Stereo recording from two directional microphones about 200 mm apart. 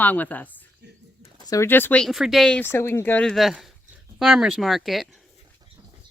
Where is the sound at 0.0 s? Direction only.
10° left (ahead or behind).